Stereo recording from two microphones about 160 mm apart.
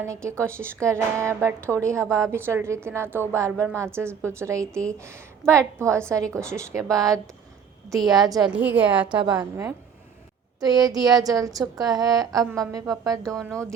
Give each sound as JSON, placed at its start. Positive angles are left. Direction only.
{"t": 0.0, "sound": "a woman's voice", "side_deg": -20}
{"t": 6.8, "sound": "speech", "side_deg": 0}
{"t": 7.9, "sound": "speech", "side_deg": -25}
{"t": 8.4, "sound": "a woman's voice", "side_deg": -10}
{"t": 9.1, "sound": "a woman's voice", "side_deg": -25}